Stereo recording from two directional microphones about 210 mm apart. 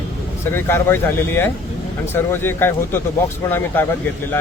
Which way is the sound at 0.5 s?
10° left (ahead or behind).